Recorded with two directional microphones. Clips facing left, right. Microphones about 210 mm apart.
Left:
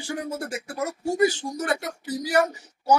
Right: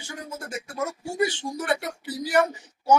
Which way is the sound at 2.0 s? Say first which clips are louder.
Even; 40° left (ahead or behind).